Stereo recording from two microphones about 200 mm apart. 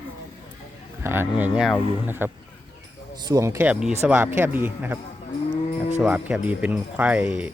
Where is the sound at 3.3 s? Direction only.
15° right (ahead or behind).